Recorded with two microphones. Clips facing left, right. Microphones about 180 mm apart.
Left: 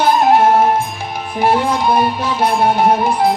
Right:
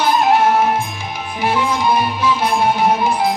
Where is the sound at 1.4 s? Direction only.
55° left (ahead or behind).